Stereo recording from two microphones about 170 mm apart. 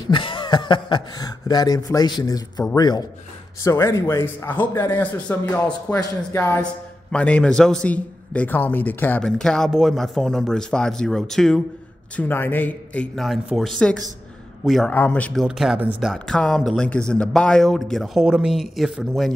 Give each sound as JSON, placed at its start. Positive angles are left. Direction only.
{"t": 0.1, "sound": "a man's voice", "side_deg": 30}
{"t": 15.4, "sound": "a man's voice", "side_deg": -5}